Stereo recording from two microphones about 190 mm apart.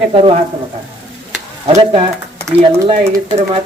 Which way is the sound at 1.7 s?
25° right (ahead or behind).